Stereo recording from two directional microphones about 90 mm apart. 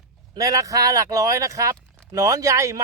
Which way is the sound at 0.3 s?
40° right (ahead or behind).